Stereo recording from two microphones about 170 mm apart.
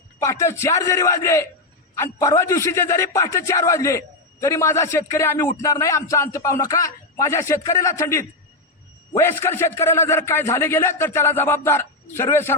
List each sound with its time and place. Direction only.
0.2 s a man's voice: 15° left (ahead or behind)